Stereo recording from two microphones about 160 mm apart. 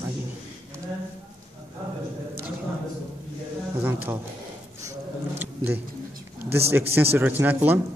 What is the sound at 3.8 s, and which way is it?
Speech, 15° right (ahead or behind).